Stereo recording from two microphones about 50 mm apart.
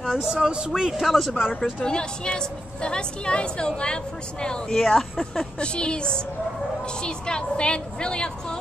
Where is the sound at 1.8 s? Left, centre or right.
Centre.